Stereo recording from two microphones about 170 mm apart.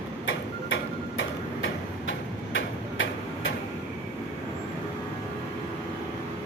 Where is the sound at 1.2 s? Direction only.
90° left.